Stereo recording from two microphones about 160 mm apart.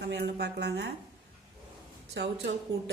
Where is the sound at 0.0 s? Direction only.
90° right.